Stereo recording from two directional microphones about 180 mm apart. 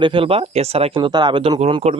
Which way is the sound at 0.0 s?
30° right (ahead or behind).